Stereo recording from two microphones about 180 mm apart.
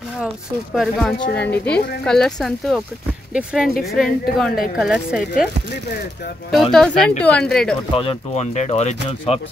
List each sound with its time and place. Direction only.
0.7 s speech: centre (ahead or behind)
6.7 s speech: 5° left (ahead or behind)
7.9 s speech: 30° left (ahead or behind)